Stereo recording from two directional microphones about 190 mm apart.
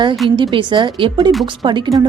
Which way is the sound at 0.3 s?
25° right (ahead or behind).